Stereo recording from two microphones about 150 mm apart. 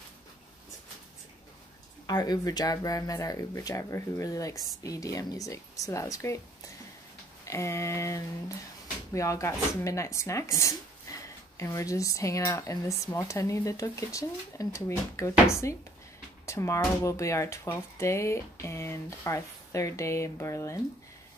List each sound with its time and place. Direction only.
2.0 s speech: 25° left (ahead or behind)
7.4 s speech: 20° left (ahead or behind)